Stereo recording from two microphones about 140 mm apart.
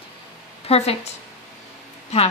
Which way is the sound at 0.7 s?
45° left (ahead or behind).